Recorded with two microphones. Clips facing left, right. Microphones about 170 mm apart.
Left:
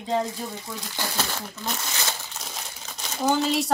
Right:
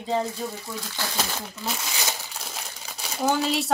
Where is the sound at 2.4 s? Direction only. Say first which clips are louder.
Even; 5° right (ahead or behind).